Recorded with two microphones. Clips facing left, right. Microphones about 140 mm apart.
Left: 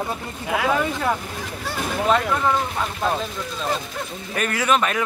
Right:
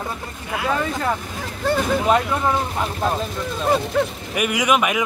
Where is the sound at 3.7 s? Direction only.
65° right (ahead or behind).